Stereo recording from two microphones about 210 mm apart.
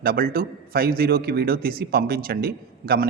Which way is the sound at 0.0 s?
45° right (ahead or behind).